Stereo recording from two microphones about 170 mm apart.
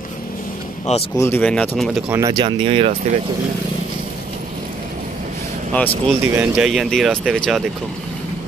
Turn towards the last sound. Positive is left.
turn(degrees=0)  # may be behind; listen again after turning